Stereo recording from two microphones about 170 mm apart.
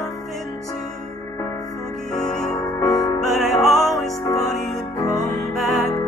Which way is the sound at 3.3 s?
Centre (ahead or behind).